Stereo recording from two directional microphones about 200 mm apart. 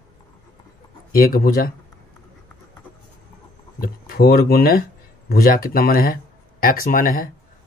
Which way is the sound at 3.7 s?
50° left (ahead or behind).